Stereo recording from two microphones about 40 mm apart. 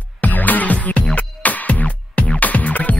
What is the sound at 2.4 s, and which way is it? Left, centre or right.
Music, left.